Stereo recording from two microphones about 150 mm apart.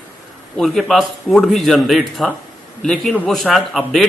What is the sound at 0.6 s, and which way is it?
Speech, centre (ahead or behind).